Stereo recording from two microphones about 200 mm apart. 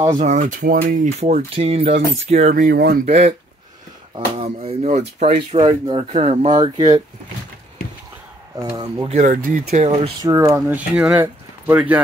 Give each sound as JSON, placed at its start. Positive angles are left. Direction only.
{"t": 0.2, "sound": "speech", "side_deg": -35}
{"t": 1.2, "sound": "speech", "side_deg": -30}
{"t": 3.1, "sound": "speech", "side_deg": -30}
{"t": 6.5, "sound": "speech", "side_deg": -20}
{"t": 8.5, "sound": "speech", "side_deg": -20}
{"t": 9.1, "sound": "speech", "side_deg": -40}
{"t": 10.2, "sound": "speech", "side_deg": -15}